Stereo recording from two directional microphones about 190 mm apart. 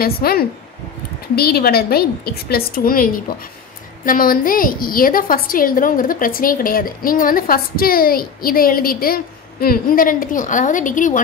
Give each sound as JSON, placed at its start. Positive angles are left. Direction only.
{"t": 0.0, "sound": "a woman's voice", "side_deg": 50}